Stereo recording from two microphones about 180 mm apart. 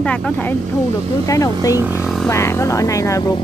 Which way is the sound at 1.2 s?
20° left (ahead or behind).